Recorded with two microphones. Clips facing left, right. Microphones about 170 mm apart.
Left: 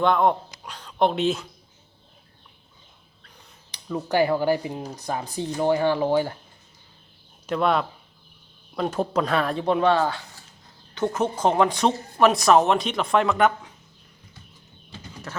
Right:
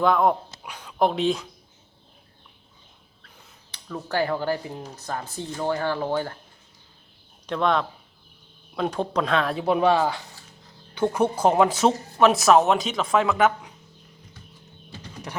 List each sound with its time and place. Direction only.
0.0 s speech: 5° right (ahead or behind)
3.7 s speech: 15° left (ahead or behind)
7.4 s speech: 5° left (ahead or behind)